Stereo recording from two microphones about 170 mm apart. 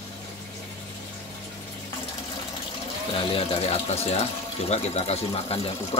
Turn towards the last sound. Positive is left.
turn(degrees=35)  # may be behind; listen again after turning